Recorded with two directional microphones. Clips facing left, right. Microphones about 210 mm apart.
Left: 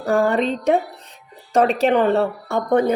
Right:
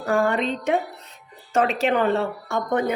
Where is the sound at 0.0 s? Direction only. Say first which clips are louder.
Left 3 dB; 35° left (ahead or behind).